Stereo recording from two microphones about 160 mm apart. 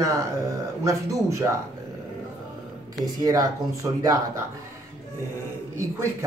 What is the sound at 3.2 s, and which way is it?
Speech, 20° right (ahead or behind).